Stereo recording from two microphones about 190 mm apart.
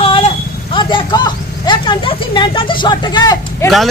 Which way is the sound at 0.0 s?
30° left (ahead or behind).